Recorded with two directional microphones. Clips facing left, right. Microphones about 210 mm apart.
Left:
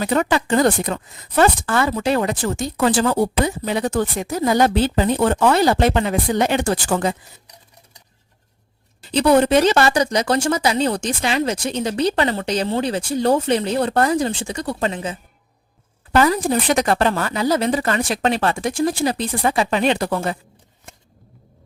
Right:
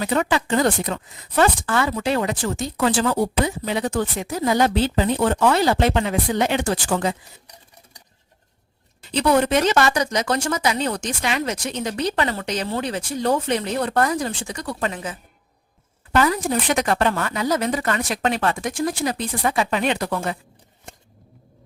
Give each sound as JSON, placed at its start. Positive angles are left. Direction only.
{"t": 0.0, "sound": "speech", "side_deg": 45}
{"t": 9.0, "sound": "a woman's voice", "side_deg": 30}